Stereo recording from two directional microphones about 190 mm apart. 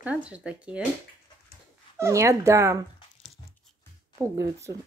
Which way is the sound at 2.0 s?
15° right (ahead or behind).